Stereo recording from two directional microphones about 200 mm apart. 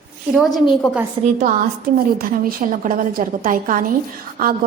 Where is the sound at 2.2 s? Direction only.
45° right (ahead or behind).